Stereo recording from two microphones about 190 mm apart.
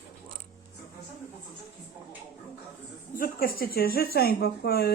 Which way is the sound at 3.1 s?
50° left (ahead or behind).